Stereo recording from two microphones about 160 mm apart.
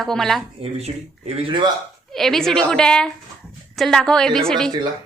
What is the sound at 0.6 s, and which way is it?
Speech, 40° right (ahead or behind).